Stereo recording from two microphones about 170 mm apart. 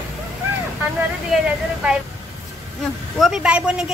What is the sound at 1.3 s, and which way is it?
Speech, centre (ahead or behind).